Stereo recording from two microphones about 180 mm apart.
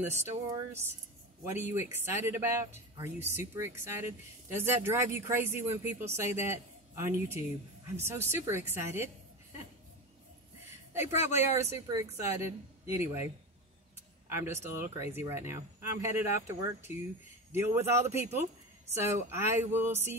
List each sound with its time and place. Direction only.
0.0 s speech: 15° right (ahead or behind)
0.5 s music: 15° right (ahead or behind)
1.4 s speech: 15° right (ahead or behind)
10.9 s speech: 15° right (ahead or behind)
14.3 s speech: 15° right (ahead or behind)